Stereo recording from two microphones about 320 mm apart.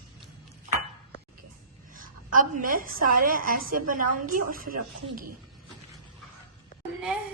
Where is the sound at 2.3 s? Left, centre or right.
Right.